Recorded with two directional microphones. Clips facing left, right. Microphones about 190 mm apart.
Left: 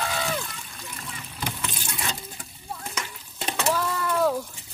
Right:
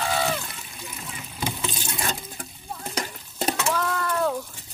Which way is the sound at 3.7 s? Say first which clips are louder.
Even; 5° left (ahead or behind).